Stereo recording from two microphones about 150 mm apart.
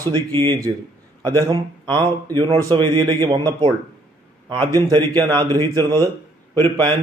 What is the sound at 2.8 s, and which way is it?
Speech, 35° right (ahead or behind).